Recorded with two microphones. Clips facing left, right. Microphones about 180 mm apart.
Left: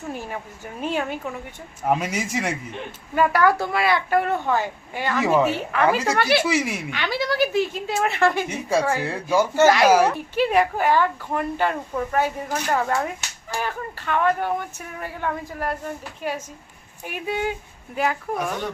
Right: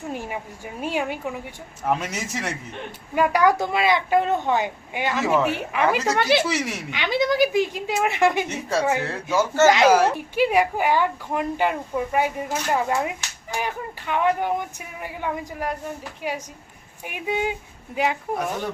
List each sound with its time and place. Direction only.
0.1 s speech: 15° right (ahead or behind)
1.9 s speech: 10° left (ahead or behind)
3.2 s a woman's voice: 15° right (ahead or behind)
6.5 s speech: 10° left (ahead or behind)
6.9 s speech: 20° right (ahead or behind)
9.0 s speech: 10° left (ahead or behind)
10.2 s a woman's voice: 10° right (ahead or behind)